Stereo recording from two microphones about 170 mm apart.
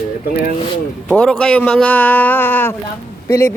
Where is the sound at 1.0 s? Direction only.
5° left (ahead or behind).